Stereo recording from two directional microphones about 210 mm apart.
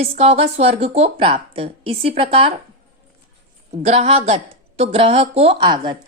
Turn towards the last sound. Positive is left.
turn(degrees=-20)  # may be behind; listen again after turning